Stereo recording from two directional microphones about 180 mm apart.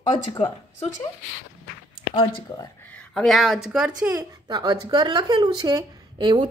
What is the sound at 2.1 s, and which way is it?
Speech, 30° left (ahead or behind).